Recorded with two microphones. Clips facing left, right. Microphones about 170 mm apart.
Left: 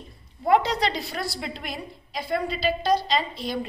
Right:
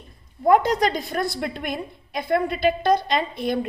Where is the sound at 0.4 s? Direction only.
50° right (ahead or behind).